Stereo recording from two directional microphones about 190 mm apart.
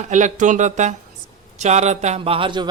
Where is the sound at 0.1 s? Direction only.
40° right (ahead or behind).